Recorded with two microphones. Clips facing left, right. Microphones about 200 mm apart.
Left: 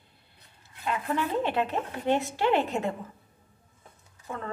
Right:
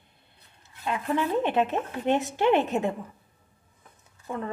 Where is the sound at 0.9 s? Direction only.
20° right (ahead or behind).